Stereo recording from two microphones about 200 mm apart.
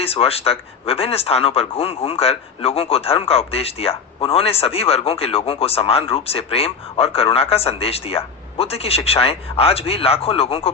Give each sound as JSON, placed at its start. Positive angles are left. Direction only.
{"t": 0.0, "sound": "speech", "side_deg": 30}